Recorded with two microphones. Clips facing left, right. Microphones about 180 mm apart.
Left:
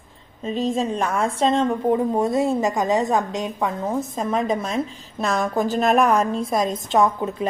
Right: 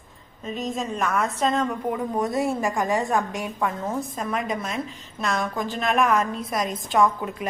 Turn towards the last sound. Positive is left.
turn(degrees=25)  # may be behind; listen again after turning